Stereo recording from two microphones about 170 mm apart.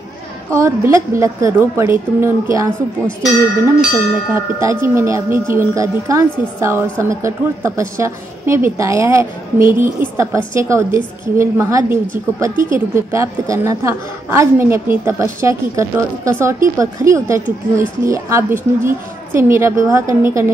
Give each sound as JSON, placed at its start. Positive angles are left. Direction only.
{"t": 0.5, "sound": "a woman's voice", "side_deg": -15}
{"t": 4.3, "sound": "a woman's voice", "side_deg": -15}